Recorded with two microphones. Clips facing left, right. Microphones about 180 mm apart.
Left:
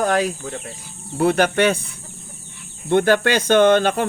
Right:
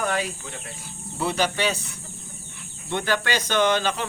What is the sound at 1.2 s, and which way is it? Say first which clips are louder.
Speech: left 8 dB; 55° left (ahead or behind).